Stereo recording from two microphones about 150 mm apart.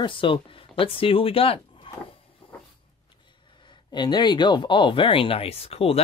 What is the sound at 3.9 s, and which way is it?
Speech, 30° left (ahead or behind).